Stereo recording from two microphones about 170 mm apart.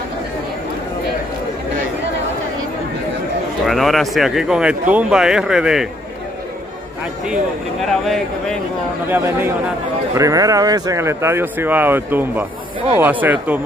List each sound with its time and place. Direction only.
3.6 s speech: centre (ahead or behind)
9.1 s speech: 15° right (ahead or behind)